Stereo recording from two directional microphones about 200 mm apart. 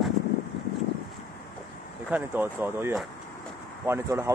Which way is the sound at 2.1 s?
10° right (ahead or behind).